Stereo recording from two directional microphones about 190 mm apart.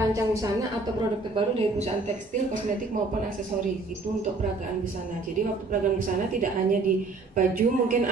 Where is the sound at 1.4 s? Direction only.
30° right (ahead or behind).